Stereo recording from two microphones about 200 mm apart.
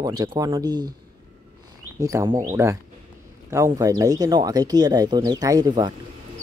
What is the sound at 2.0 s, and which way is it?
Speech, 15° right (ahead or behind).